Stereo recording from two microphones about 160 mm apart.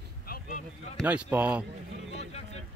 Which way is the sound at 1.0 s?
10° right (ahead or behind).